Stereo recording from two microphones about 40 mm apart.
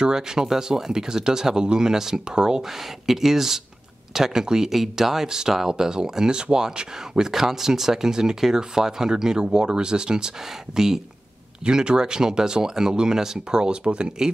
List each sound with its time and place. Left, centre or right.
0.0 s speech: centre
4.6 s speech: centre
11.6 s speech: right